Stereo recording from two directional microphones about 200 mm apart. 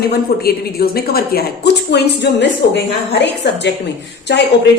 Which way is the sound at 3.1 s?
60° left (ahead or behind).